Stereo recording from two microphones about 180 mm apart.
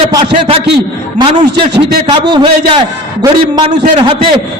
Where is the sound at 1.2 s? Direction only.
25° right (ahead or behind).